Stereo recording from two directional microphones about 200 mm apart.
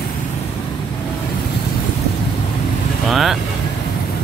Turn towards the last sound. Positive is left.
turn(degrees=0)  # may be behind; listen again after turning